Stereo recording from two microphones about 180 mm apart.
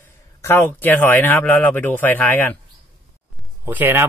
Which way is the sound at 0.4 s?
10° left (ahead or behind).